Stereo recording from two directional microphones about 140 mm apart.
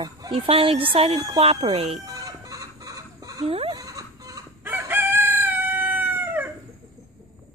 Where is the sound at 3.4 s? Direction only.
40° right (ahead or behind).